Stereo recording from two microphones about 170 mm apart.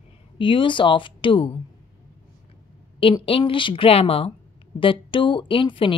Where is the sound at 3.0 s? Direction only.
30° left (ahead or behind).